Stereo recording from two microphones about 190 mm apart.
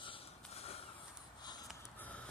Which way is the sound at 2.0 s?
10° left (ahead or behind).